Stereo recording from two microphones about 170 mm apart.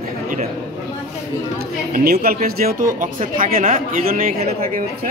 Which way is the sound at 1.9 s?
60° right (ahead or behind).